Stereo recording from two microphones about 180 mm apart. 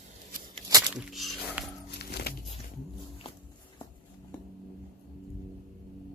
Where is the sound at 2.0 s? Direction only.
65° left (ahead or behind).